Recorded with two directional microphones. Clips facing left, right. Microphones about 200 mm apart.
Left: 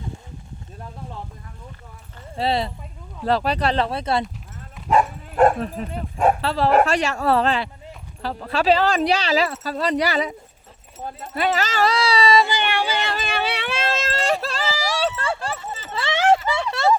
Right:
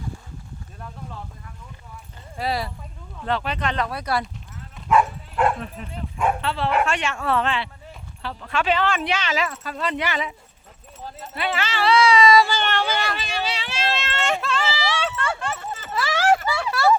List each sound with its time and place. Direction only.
2.3 s speech: 25° left (ahead or behind)
3.2 s speech: 35° left (ahead or behind)
5.3 s dog: 45° left (ahead or behind)
6.1 s speech: 40° left (ahead or behind)
12.4 s speech: 15° left (ahead or behind)
13.2 s a sound: 60° left (ahead or behind); by 16.9 s 25° left (ahead or behind)